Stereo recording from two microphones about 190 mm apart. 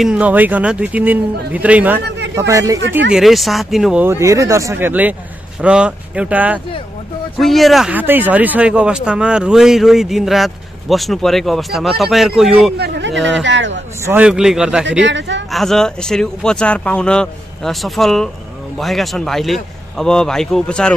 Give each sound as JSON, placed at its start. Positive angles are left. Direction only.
{"t": 0.0, "sound": "speech", "side_deg": -5}
{"t": 3.1, "sound": "speech", "side_deg": 0}
{"t": 12.7, "sound": "speech", "side_deg": -60}
{"t": 14.0, "sound": "speech", "side_deg": -5}
{"t": 14.9, "sound": "speech", "side_deg": -70}
{"t": 15.5, "sound": "speech", "side_deg": 0}